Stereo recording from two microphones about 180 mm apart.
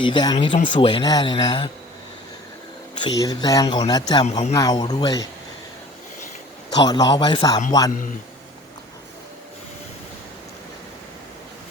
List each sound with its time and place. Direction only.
0.0 s speech: 25° left (ahead or behind)
2.9 s speech: 20° left (ahead or behind)
6.7 s speech: 20° left (ahead or behind)